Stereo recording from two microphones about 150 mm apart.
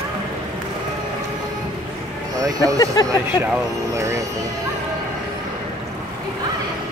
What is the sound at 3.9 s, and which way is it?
Speech, 20° right (ahead or behind).